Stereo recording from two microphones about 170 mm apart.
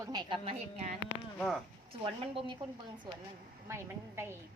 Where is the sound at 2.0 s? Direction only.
30° right (ahead or behind).